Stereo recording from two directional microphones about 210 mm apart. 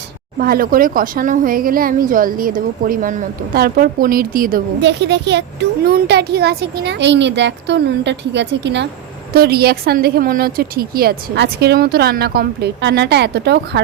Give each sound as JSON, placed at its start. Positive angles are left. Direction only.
{"t": 0.3, "sound": "speech", "side_deg": -45}